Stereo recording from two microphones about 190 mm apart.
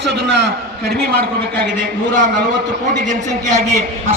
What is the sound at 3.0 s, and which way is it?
Speech, 40° right (ahead or behind).